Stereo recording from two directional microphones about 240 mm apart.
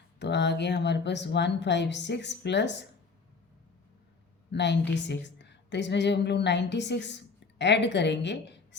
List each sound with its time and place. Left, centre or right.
0.2 s speech: left
4.5 s a woman's voice: left